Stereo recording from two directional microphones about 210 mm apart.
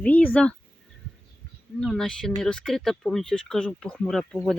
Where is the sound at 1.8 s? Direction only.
Centre (ahead or behind).